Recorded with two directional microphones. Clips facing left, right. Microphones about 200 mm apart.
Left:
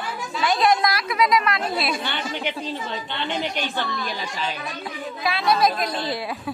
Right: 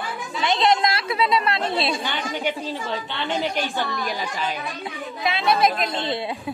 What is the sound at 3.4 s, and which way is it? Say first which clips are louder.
Speech: right 2 dB; 10° right (ahead or behind).